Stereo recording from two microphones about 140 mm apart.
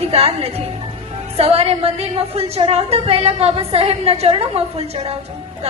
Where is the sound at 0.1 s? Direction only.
45° right (ahead or behind).